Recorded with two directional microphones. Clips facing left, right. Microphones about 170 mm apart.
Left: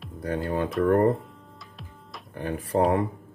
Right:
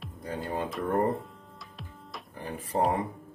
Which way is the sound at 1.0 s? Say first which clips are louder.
Left 6 dB; centre (ahead or behind).